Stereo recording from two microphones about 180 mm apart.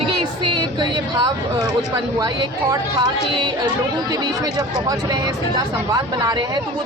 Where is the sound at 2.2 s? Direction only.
20° right (ahead or behind).